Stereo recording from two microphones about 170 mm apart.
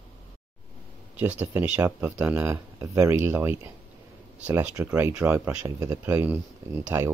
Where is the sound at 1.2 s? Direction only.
10° right (ahead or behind).